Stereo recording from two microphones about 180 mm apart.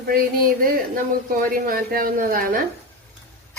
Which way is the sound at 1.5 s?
55° right (ahead or behind).